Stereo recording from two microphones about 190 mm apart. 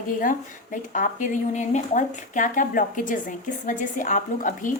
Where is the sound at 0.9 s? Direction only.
45° left (ahead or behind).